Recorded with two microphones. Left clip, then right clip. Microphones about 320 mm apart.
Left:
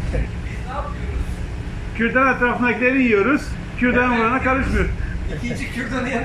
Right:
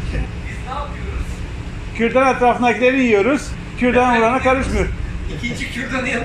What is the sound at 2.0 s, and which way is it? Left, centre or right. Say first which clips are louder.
A man's voice: right 2 dB; centre.